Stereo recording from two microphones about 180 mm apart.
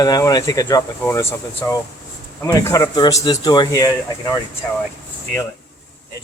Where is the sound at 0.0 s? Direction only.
20° left (ahead or behind).